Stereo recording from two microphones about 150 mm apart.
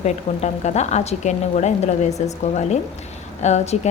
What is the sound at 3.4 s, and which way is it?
Speech, 50° left (ahead or behind).